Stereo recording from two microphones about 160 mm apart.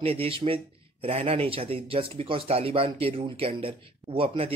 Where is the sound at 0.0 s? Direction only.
35° right (ahead or behind).